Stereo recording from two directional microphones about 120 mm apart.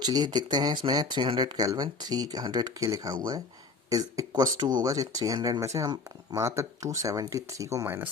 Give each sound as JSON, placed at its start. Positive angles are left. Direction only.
{"t": 0.0, "sound": "speech", "side_deg": -35}